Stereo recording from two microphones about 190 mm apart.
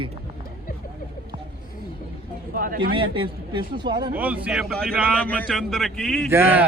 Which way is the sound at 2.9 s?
25° right (ahead or behind).